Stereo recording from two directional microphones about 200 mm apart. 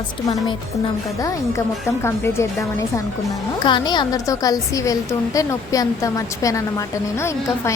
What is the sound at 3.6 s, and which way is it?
A woman's voice, 20° left (ahead or behind).